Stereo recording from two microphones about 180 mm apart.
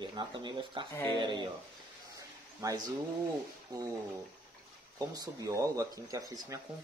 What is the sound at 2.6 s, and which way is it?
Speech, 20° right (ahead or behind).